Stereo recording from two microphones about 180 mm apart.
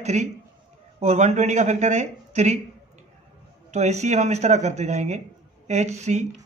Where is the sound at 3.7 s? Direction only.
40° right (ahead or behind).